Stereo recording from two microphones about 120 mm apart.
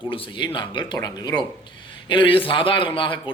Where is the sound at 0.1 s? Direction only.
40° left (ahead or behind).